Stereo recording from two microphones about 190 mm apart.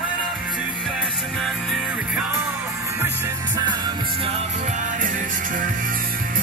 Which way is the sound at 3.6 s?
25° right (ahead or behind).